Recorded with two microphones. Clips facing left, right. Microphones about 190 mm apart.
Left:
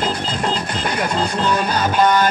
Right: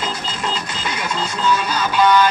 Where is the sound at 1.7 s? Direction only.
50° left (ahead or behind).